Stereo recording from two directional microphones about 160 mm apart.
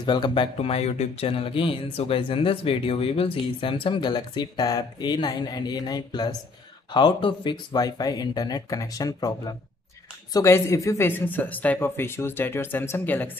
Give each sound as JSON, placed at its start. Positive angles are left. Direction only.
{"t": 0.0, "sound": "speech", "side_deg": 25}